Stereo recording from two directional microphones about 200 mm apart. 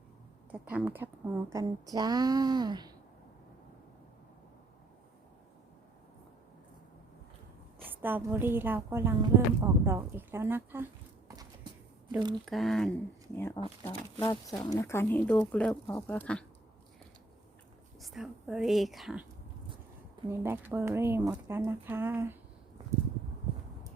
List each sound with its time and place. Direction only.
0.5 s a woman's voice: 5° right (ahead or behind)
7.9 s a woman's voice: 10° right (ahead or behind)
12.5 s speech: centre (ahead or behind)
13.3 s speech: 10° left (ahead or behind)
18.0 s speech: centre (ahead or behind)
20.3 s a woman's voice: 10° right (ahead or behind)